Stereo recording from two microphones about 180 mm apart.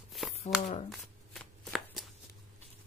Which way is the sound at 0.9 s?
5° left (ahead or behind).